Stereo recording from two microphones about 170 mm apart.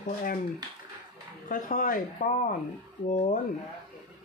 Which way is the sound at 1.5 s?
50° left (ahead or behind).